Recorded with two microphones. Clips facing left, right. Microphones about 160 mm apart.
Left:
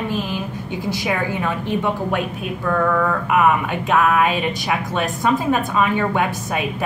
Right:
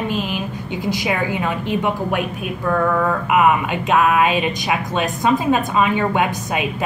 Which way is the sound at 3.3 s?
20° right (ahead or behind).